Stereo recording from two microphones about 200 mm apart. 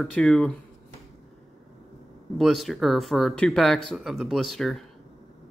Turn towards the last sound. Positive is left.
turn(degrees=0)  # may be behind; listen again after turning